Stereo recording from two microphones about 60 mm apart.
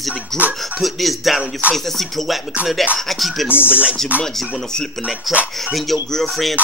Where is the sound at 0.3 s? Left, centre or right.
Centre.